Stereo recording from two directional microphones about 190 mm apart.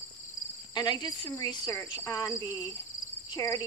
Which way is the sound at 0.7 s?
20° left (ahead or behind).